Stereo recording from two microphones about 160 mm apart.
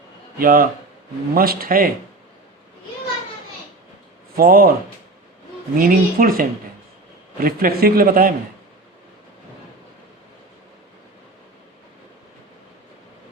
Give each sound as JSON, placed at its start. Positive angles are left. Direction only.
{"t": 0.3, "sound": "a man's voice", "side_deg": -65}
{"t": 4.4, "sound": "a man's voice", "side_deg": -65}
{"t": 5.7, "sound": "a man's voice", "side_deg": -60}